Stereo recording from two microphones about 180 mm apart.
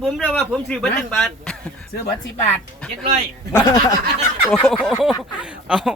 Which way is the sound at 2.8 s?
5° left (ahead or behind).